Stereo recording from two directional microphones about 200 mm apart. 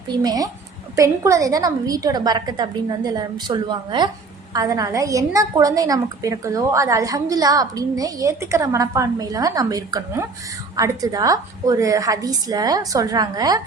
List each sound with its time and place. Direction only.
0.1 s a woman's voice: 20° right (ahead or behind)